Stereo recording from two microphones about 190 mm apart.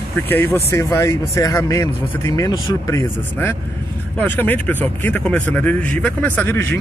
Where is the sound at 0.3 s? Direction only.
10° left (ahead or behind).